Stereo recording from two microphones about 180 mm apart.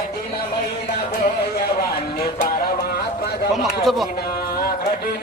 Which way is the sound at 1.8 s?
55° left (ahead or behind).